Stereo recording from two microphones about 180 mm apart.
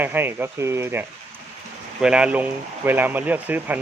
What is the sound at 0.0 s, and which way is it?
Speech, 10° right (ahead or behind).